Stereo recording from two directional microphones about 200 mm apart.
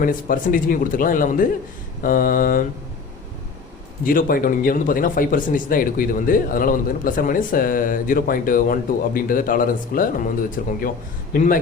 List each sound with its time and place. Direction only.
0.0 s speech: 45° left (ahead or behind)
4.0 s speech: 45° left (ahead or behind)